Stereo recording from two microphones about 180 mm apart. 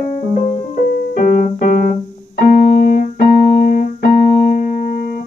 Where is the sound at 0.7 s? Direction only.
55° left (ahead or behind).